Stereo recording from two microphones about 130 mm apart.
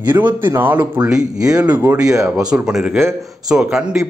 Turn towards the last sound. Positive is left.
turn(degrees=-5)  # may be behind; listen again after turning